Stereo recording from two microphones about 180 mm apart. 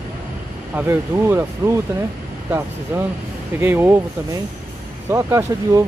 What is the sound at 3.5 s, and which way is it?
Speech, 10° right (ahead or behind).